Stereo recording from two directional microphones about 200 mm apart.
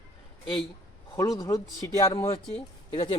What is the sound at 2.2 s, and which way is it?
Speech, 30° left (ahead or behind).